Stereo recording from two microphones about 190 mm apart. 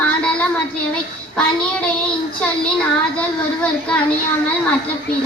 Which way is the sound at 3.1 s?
5° left (ahead or behind).